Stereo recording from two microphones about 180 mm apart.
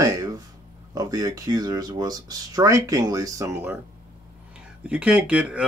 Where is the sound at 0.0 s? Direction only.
20° right (ahead or behind).